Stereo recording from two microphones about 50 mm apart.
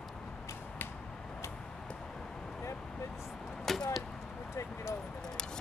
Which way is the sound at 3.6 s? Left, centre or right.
Centre.